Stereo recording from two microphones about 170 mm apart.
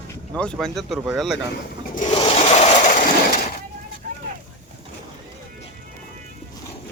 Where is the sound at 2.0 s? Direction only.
35° left (ahead or behind).